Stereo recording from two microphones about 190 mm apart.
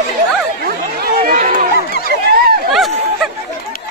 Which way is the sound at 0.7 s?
50° right (ahead or behind).